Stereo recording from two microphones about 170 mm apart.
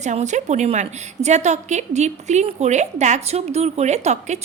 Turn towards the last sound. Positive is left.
turn(degrees=-40)  # may be behind; listen again after turning